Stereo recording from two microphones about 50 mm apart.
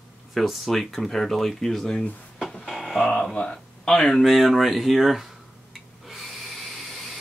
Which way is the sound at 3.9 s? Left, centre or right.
Centre.